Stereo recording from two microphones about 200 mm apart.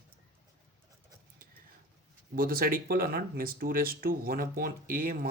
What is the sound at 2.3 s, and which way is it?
Speech, 45° right (ahead or behind).